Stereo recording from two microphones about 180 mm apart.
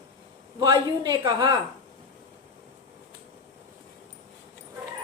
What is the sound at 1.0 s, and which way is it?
Speech, 25° right (ahead or behind).